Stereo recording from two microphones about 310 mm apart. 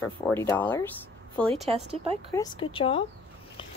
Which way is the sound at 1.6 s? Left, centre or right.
Centre.